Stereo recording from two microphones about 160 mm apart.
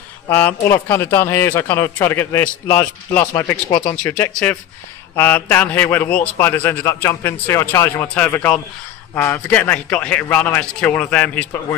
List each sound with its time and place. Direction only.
0.3 s a man's voice: 10° left (ahead or behind)
5.1 s a man's voice: 10° left (ahead or behind)